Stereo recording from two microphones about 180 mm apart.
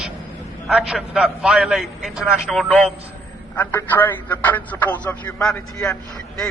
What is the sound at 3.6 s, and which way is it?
A man's voice, 10° left (ahead or behind).